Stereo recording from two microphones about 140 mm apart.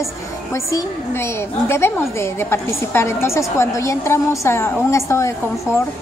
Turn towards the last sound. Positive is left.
turn(degrees=20)  # may be behind; listen again after turning